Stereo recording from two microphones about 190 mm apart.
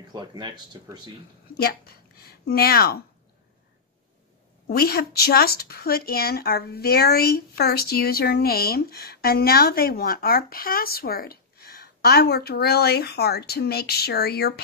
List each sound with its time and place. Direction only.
0.1 s speech: 20° right (ahead or behind)
1.6 s speech: 55° left (ahead or behind)
4.6 s speech: 55° left (ahead or behind)